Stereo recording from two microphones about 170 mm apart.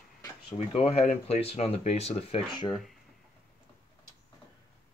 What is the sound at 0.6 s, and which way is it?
Speech, 40° left (ahead or behind).